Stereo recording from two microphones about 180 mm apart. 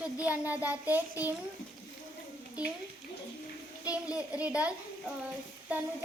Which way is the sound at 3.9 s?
5° right (ahead or behind).